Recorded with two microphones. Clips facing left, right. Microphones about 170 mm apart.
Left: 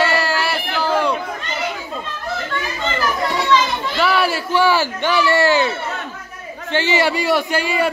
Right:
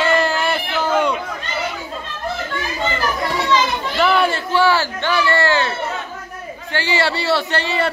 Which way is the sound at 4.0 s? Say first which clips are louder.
Right 2 dB; 5° left (ahead or behind).